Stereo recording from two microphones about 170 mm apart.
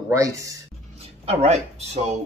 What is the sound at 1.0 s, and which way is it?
Speech, 40° right (ahead or behind).